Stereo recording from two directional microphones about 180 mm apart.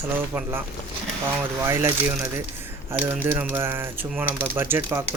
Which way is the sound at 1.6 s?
15° right (ahead or behind).